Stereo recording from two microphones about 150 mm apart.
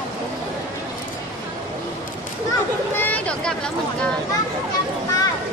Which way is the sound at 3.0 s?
10° left (ahead or behind).